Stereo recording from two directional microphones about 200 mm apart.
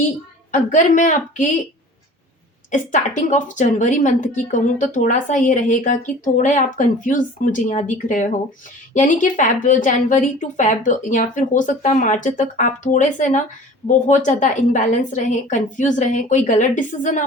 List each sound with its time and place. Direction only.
0.5 s a woman's voice: 40° left (ahead or behind)
2.9 s a woman's voice: 40° left (ahead or behind)